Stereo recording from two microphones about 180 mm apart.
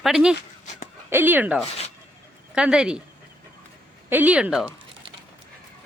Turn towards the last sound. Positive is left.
turn(degrees=-5)  # may be behind; listen again after turning